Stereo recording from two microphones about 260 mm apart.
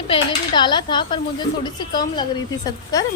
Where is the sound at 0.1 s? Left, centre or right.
Centre.